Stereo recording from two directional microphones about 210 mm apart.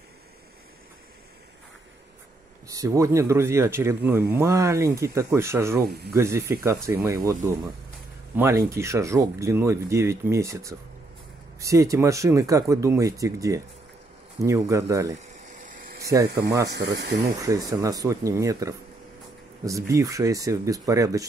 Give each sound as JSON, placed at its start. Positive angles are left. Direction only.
{"t": 2.7, "sound": "speech", "side_deg": -15}
{"t": 5.8, "sound": "speech", "side_deg": -50}
{"t": 6.1, "sound": "speech", "side_deg": -15}
{"t": 8.4, "sound": "speech", "side_deg": -15}
{"t": 15.1, "sound": "a sound", "side_deg": -40}
{"t": 16.6, "sound": "speech", "side_deg": -55}
{"t": 17.4, "sound": "speech", "side_deg": -15}